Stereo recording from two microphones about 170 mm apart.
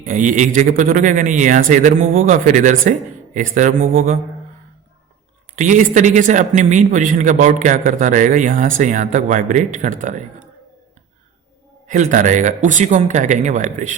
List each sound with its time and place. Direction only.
0.0 s speech: 50° right (ahead or behind)
5.5 s speech: 50° right (ahead or behind)
11.9 s speech: 50° right (ahead or behind)